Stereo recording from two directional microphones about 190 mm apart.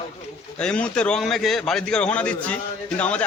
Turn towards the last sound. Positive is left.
turn(degrees=5)  # may be behind; listen again after turning